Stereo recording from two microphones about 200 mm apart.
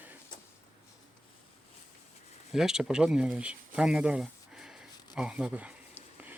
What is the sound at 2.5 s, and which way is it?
Speech, centre (ahead or behind).